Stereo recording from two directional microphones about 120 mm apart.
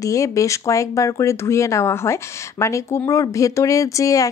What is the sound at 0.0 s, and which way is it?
Speech, 25° left (ahead or behind).